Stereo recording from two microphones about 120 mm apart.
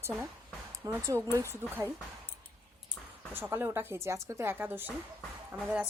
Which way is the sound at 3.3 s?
20° right (ahead or behind).